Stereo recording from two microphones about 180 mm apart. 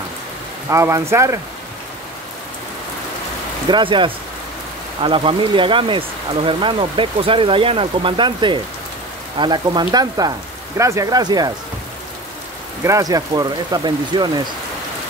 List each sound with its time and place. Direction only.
0.7 s speech: 15° right (ahead or behind)
3.6 s speech: 25° right (ahead or behind)
12.8 s speech: 20° right (ahead or behind)